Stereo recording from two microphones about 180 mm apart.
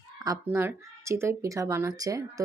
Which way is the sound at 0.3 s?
15° right (ahead or behind).